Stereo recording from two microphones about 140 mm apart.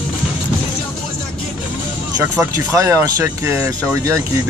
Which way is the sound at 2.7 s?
20° right (ahead or behind).